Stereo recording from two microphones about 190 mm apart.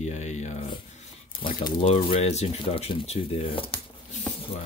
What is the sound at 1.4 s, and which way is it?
Speech, 25° left (ahead or behind).